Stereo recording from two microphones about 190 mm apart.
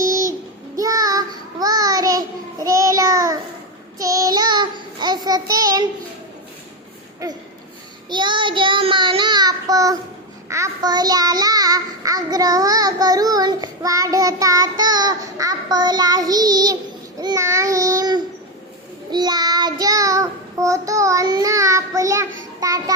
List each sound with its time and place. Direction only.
0.8 s child singing: 20° right (ahead or behind)
8.1 s child singing: 25° right (ahead or behind)